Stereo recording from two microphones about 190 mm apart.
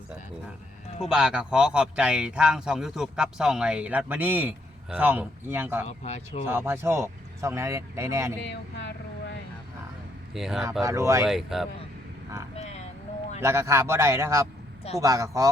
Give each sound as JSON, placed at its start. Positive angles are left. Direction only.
{"t": 1.0, "sound": "speech", "side_deg": -5}
{"t": 5.8, "sound": "speech", "side_deg": 35}
{"t": 6.5, "sound": "speech", "side_deg": -10}
{"t": 8.4, "sound": "speech", "side_deg": 65}
{"t": 10.3, "sound": "speech", "side_deg": 0}
{"t": 10.8, "sound": "speech", "side_deg": -15}
{"t": 11.3, "sound": "speech", "side_deg": 0}
{"t": 12.5, "sound": "vehicle", "side_deg": 35}
{"t": 13.4, "sound": "speech", "side_deg": -15}